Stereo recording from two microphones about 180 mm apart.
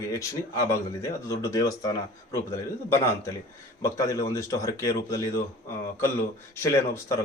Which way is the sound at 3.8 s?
15° left (ahead or behind).